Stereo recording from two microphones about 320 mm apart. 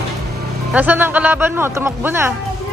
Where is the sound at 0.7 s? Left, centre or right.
Centre.